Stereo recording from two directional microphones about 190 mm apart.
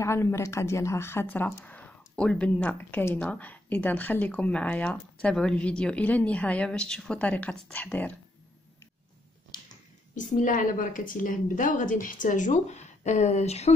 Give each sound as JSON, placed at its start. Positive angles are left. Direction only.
{"t": 0.0, "sound": "a woman's voice", "side_deg": 15}
{"t": 9.5, "sound": "finger snapping", "side_deg": 20}
{"t": 10.1, "sound": "a woman's voice", "side_deg": 40}